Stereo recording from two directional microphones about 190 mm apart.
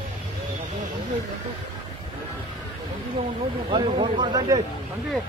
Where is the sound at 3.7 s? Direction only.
25° right (ahead or behind).